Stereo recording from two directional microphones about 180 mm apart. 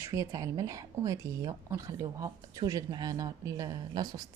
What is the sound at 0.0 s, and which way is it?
Speech, 20° right (ahead or behind).